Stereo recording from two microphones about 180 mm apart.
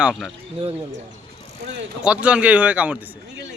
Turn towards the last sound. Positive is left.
turn(degrees=-10)  # may be behind; listen again after turning